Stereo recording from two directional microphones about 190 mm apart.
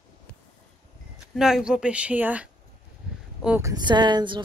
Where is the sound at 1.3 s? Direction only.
Centre (ahead or behind).